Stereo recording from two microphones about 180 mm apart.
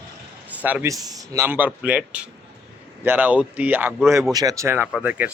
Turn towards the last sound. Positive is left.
turn(degrees=-10)  # may be behind; listen again after turning